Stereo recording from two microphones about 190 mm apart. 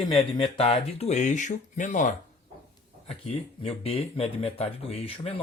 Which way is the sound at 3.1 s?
30° left (ahead or behind).